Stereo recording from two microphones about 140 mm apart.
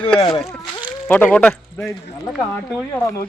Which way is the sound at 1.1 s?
10° left (ahead or behind).